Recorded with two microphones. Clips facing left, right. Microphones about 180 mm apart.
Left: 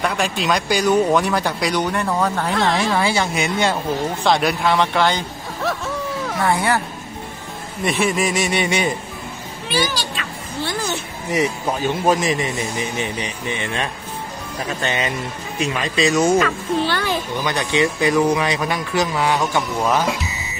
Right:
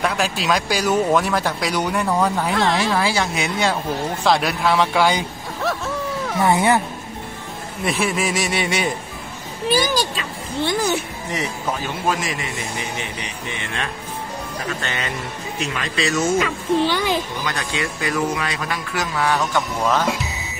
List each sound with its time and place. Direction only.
0.0 s speech: centre (ahead or behind)
6.4 s speech: 20° right (ahead or behind)
7.8 s speech: centre (ahead or behind)
9.7 s a child's voice: 40° right (ahead or behind)
10.6 s speech: 20° right (ahead or behind)
12.1 s speech: 20° left (ahead or behind)
14.8 s speech: 20° left (ahead or behind)
16.3 s speech: 15° right (ahead or behind)
17.5 s speech: 20° left (ahead or behind)